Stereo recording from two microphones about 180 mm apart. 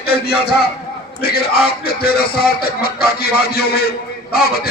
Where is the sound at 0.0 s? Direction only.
60° left (ahead or behind).